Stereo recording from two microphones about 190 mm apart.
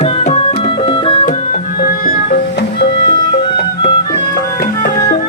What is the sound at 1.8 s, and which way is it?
Music, 50° left (ahead or behind).